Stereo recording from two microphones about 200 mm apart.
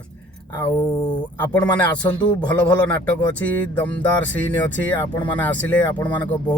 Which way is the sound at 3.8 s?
10° left (ahead or behind).